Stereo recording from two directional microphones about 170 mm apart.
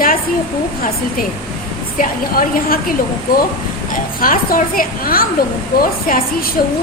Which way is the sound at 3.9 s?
55° left (ahead or behind).